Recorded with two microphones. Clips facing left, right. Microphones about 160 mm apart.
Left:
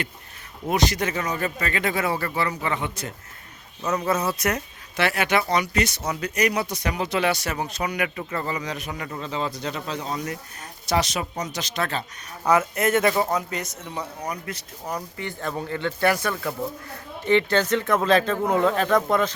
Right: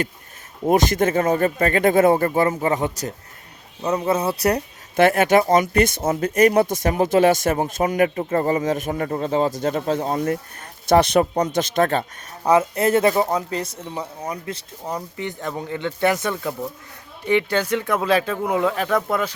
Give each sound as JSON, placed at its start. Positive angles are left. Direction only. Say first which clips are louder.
{"t": 0.6, "sound": "speech", "louder": "right 6 dB", "side_deg": -45}
{"t": 3.8, "sound": "speech", "louder": "right 3 dB", "side_deg": -30}
{"t": 12.4, "sound": "speech", "louder": "right 3 dB", "side_deg": -30}